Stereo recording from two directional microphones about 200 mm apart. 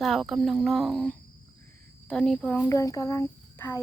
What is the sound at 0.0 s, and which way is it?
A child's voice, centre (ahead or behind).